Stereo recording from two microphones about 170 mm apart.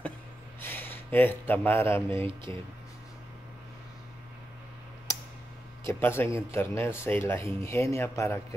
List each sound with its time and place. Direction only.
0.6 s speech: 10° left (ahead or behind)
2.2 s speech: 30° right (ahead or behind)
5.9 s speech: 15° left (ahead or behind)